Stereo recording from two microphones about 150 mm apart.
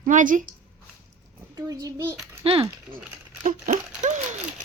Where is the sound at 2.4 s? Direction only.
40° right (ahead or behind).